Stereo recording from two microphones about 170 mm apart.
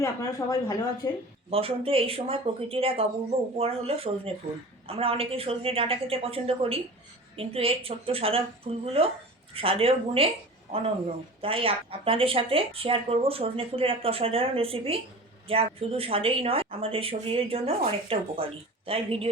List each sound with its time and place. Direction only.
0.0 s speech: 20° left (ahead or behind)
1.5 s speech: 35° right (ahead or behind)
11.3 s speech: 30° right (ahead or behind)